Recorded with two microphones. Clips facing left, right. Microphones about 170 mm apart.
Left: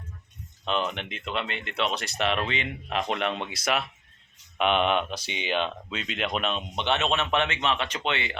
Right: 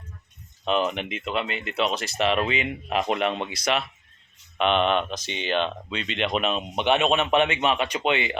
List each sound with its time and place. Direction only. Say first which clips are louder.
0.6 s speech: right 4 dB; 5° right (ahead or behind)